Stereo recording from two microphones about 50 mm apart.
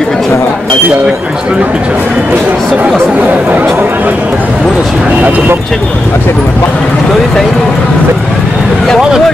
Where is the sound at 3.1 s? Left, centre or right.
Right.